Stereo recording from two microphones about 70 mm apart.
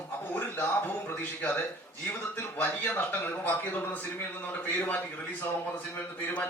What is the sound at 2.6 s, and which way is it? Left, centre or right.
A man's voice, left.